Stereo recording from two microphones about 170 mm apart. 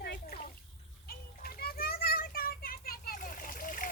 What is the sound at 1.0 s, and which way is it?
Children playing, 60° left (ahead or behind).